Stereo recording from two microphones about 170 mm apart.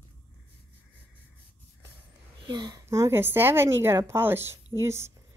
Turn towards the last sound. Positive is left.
turn(degrees=-15)  # may be behind; listen again after turning